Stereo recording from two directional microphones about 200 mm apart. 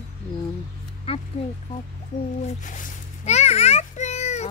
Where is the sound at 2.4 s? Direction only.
40° left (ahead or behind).